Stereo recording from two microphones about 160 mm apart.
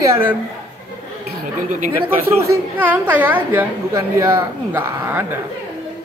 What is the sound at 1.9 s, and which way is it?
A man's voice, 15° right (ahead or behind).